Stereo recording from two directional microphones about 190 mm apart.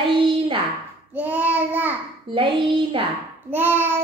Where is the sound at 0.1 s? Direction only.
25° right (ahead or behind).